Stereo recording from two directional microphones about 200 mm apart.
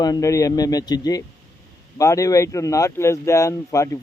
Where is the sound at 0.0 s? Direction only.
15° left (ahead or behind).